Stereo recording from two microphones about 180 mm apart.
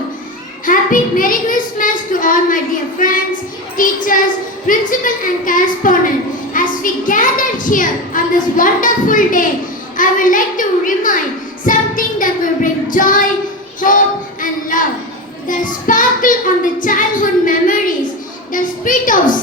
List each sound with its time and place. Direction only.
0.6 s a child's voice: 50° left (ahead or behind)
11.6 s child singing: 50° left (ahead or behind)
14.4 s a sound: 50° left (ahead or behind)
15.4 s child singing: 45° left (ahead or behind)
16.8 s a child's voice: 50° left (ahead or behind)